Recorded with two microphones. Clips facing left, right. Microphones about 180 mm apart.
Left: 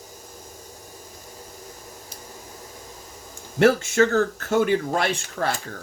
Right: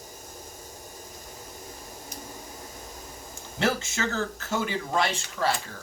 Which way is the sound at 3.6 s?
55° left (ahead or behind).